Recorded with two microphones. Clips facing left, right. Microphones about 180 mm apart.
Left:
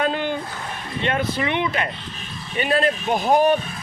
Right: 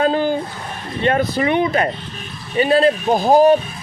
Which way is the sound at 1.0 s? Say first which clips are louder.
Right 6 dB; 40° right (ahead or behind).